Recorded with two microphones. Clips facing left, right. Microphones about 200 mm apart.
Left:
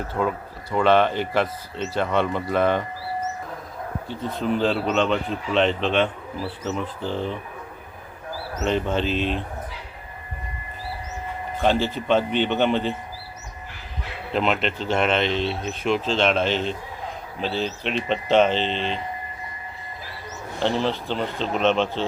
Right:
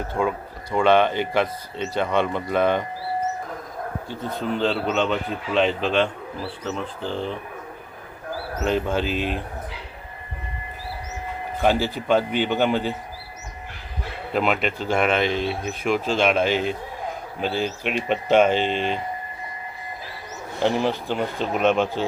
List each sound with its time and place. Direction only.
0.2 s speech: 10° right (ahead or behind)
0.9 s speech: 5° left (ahead or behind)
4.4 s speech: centre (ahead or behind)
8.6 s speech: 5° right (ahead or behind)
11.6 s speech: 5° right (ahead or behind)
14.3 s speech: 5° right (ahead or behind)
17.8 s speech: 10° right (ahead or behind)
20.6 s speech: 15° right (ahead or behind)